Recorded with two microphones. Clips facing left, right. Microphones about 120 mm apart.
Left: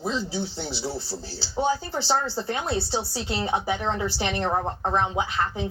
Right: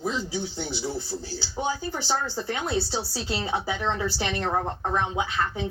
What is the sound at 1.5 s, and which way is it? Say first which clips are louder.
A woman's voice: left 4 dB; 35° left (ahead or behind).